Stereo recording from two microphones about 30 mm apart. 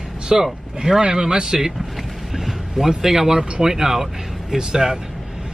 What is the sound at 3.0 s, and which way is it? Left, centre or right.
Speech, centre.